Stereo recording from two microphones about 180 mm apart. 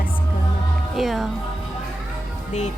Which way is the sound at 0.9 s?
Centre (ahead or behind).